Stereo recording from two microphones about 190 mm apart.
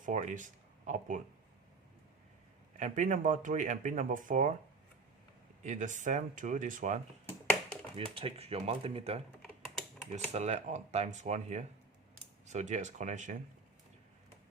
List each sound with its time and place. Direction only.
0.0 s speech: 40° right (ahead or behind)
2.7 s speech: 40° right (ahead or behind)
5.6 s speech: 40° right (ahead or behind)
7.9 s speech: 30° right (ahead or behind)